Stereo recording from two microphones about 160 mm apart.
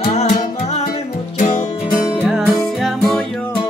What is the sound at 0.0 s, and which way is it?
Music, 45° left (ahead or behind).